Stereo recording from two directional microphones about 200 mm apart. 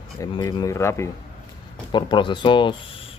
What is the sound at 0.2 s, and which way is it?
Speech, 20° left (ahead or behind).